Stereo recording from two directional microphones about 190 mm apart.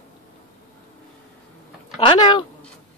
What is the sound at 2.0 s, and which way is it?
Speech, 25° left (ahead or behind).